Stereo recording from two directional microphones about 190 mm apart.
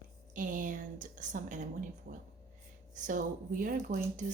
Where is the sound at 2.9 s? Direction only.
45° right (ahead or behind).